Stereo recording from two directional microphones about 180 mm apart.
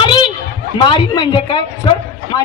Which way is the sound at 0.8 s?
25° left (ahead or behind).